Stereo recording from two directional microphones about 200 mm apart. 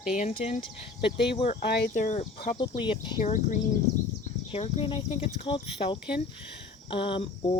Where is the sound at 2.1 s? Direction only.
40° left (ahead or behind).